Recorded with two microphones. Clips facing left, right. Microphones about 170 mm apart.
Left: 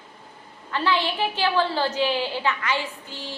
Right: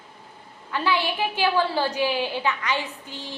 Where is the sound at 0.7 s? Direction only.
15° right (ahead or behind).